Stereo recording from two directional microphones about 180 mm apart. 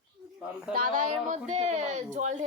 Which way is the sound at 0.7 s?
50° right (ahead or behind).